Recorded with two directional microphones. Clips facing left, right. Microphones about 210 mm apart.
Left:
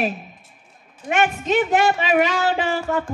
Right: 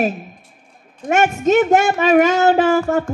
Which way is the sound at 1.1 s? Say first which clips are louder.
Right 5 dB; 45° right (ahead or behind).